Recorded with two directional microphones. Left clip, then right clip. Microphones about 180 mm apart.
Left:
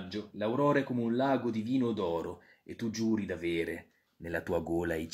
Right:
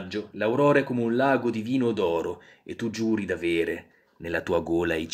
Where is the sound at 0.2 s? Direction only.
10° left (ahead or behind).